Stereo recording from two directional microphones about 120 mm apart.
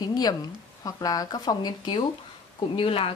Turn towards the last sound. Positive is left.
turn(degrees=50)  # may be behind; listen again after turning